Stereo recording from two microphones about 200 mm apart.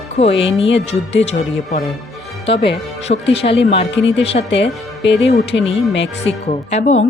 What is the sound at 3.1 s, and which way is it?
Speech, 40° left (ahead or behind).